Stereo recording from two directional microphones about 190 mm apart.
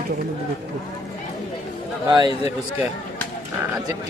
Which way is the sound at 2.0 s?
25° right (ahead or behind).